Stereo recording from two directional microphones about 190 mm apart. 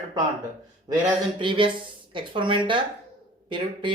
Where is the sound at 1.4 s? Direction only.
25° right (ahead or behind).